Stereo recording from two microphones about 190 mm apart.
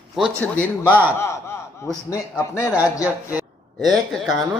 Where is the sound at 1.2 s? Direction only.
15° left (ahead or behind).